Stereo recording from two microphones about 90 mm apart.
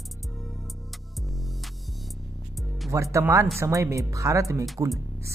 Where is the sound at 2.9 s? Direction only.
35° right (ahead or behind).